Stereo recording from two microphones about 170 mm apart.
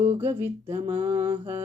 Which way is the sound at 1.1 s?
35° right (ahead or behind).